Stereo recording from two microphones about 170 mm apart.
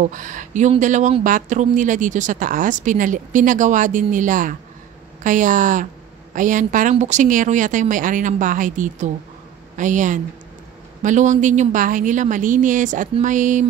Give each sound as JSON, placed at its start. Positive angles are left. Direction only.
{"t": 0.0, "sound": "speech", "side_deg": -50}